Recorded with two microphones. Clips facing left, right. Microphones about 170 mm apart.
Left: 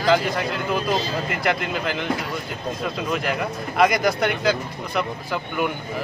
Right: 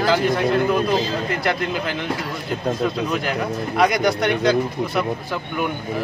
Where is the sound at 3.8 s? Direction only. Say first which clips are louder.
Even; centre (ahead or behind).